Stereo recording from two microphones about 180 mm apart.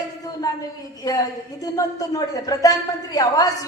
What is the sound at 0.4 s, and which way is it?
A woman's voice, 20° left (ahead or behind).